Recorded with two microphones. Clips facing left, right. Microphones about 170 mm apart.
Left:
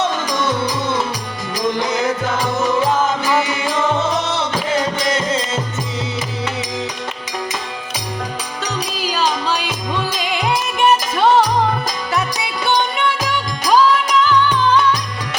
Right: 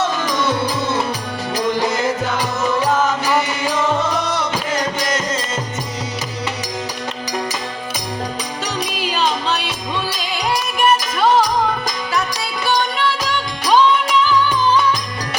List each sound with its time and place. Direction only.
4.2 s music: 25° left (ahead or behind)
9.0 s music: 5° left (ahead or behind)
10.8 s music: 25° left (ahead or behind)